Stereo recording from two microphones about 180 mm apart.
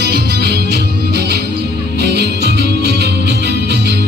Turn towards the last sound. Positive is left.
turn(degrees=-70)  # may be behind; listen again after turning